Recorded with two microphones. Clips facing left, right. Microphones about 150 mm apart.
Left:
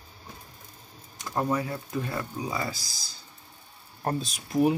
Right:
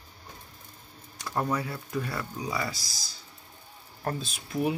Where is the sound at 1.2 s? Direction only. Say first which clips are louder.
Left 2 dB; 20° left (ahead or behind).